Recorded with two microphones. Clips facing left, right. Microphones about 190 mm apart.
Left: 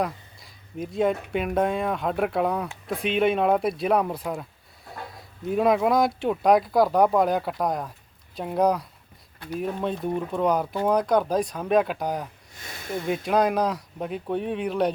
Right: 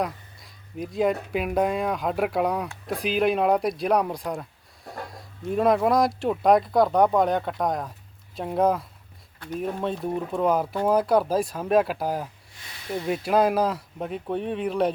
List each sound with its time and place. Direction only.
0.0 s speech: centre (ahead or behind)
12.5 s a sound: 45° left (ahead or behind)
13.2 s speech: 5° right (ahead or behind)